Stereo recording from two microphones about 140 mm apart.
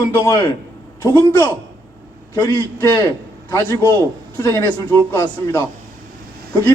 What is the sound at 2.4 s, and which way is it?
A man's voice, 30° left (ahead or behind).